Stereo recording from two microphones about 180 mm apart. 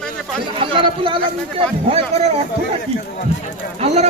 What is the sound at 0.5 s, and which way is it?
Speech, 30° right (ahead or behind).